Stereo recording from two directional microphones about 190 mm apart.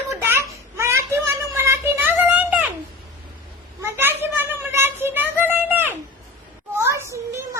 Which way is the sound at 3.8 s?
10° right (ahead or behind).